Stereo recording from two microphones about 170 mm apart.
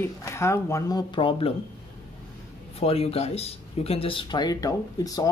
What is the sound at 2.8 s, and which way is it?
Speech, 35° left (ahead or behind).